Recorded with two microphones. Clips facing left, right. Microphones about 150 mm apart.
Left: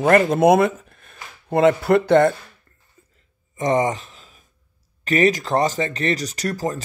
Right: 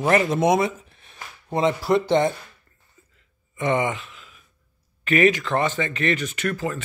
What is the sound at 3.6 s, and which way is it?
Speech, 35° left (ahead or behind).